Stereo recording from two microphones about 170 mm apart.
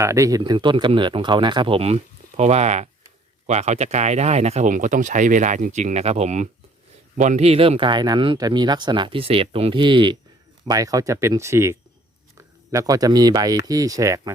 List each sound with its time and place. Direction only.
0.0 s speech: 20° right (ahead or behind)